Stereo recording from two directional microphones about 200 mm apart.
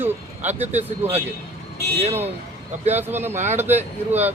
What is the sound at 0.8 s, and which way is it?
Speech, 10° right (ahead or behind).